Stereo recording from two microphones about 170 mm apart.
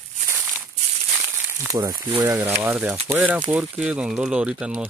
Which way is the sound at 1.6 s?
20° right (ahead or behind).